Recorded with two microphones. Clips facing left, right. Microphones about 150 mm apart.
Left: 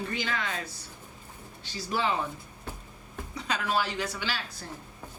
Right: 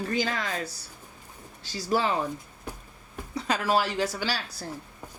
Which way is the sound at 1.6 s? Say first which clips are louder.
Right 5 dB; 40° right (ahead or behind).